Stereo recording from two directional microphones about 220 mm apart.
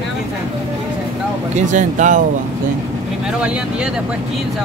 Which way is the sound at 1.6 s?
35° right (ahead or behind).